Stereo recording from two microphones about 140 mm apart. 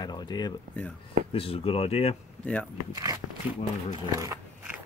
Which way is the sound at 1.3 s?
40° left (ahead or behind).